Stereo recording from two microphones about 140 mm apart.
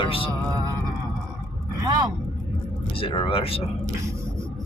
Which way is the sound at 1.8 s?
30° right (ahead or behind).